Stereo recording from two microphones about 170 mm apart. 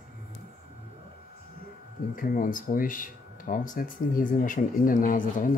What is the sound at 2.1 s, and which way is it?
Speech, 55° left (ahead or behind).